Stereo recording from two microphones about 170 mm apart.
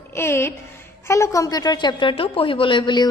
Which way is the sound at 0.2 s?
15° left (ahead or behind).